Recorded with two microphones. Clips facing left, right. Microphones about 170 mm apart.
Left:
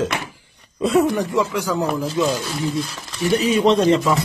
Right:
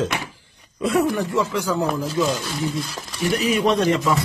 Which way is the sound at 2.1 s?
Centre (ahead or behind).